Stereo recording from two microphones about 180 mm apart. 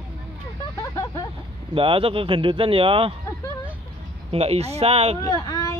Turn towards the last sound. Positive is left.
turn(degrees=20)  # may be behind; listen again after turning